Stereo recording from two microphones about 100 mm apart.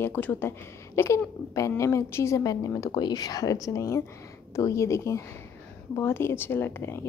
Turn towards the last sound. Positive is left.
turn(degrees=25)  # may be behind; listen again after turning